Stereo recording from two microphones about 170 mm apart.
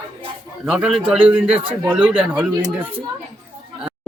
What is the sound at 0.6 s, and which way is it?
A man's voice, 5° right (ahead or behind).